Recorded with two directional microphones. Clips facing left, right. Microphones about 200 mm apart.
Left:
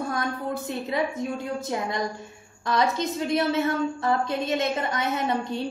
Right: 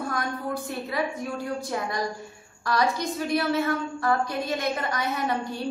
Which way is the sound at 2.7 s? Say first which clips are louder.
Left 1 dB; 20° left (ahead or behind).